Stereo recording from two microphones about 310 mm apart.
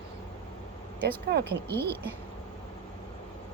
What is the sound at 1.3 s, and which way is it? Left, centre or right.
Speech, right.